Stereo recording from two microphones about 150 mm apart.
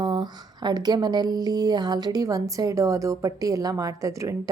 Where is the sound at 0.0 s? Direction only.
30° right (ahead or behind).